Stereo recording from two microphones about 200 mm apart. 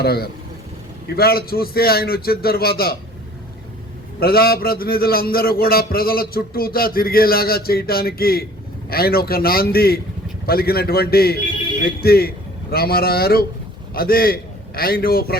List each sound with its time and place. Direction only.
0.0 s a man's voice: 50° left (ahead or behind)
4.2 s a man's voice: 50° left (ahead or behind)